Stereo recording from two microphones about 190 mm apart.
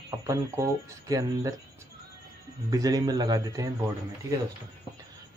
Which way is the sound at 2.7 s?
20° right (ahead or behind).